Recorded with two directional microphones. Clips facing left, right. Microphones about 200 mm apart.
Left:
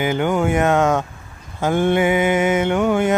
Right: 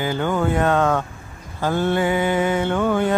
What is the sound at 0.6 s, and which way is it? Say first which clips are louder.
Speech: left 1 dB; 20° left (ahead or behind).